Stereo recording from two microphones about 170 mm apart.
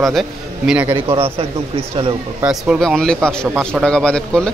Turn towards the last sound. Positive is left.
turn(degrees=5)  # may be behind; listen again after turning